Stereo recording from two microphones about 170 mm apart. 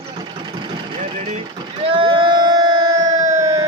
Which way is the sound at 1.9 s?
30° right (ahead or behind).